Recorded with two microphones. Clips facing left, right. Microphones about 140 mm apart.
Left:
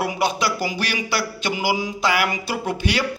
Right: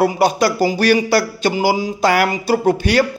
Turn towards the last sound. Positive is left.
turn(degrees=-40)  # may be behind; listen again after turning